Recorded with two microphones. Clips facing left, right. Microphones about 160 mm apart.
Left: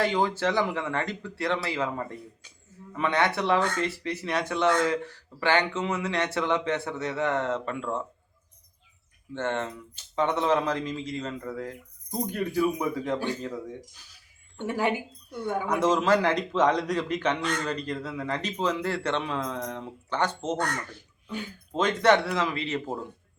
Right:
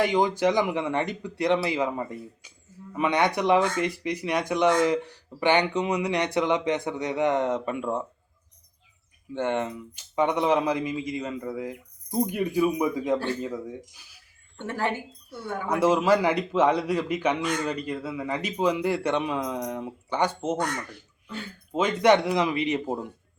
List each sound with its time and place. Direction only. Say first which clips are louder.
0.0 s speech: right 3 dB; 15° right (ahead or behind)
9.3 s speech: right 3 dB; 15° right (ahead or behind)
14.7 s speech: left 1 dB; 15° left (ahead or behind)
15.7 s speech: right 2 dB; 10° right (ahead or behind)
21.7 s speech: right 2 dB; 5° right (ahead or behind)